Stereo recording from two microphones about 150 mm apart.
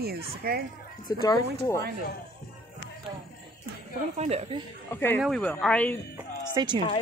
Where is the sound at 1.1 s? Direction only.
25° left (ahead or behind).